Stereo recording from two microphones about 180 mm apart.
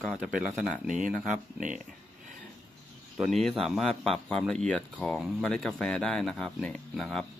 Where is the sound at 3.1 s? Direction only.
Centre (ahead or behind).